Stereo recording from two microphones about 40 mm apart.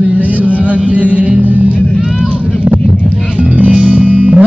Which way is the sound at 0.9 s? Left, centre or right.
Right.